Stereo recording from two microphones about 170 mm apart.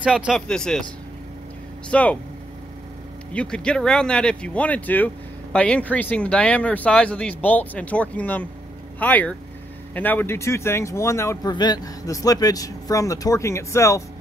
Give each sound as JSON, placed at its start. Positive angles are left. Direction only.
{"t": 0.0, "sound": "speech", "side_deg": -5}
{"t": 0.5, "sound": "speech", "side_deg": 5}
{"t": 1.9, "sound": "speech", "side_deg": 5}
{"t": 3.3, "sound": "speech", "side_deg": 5}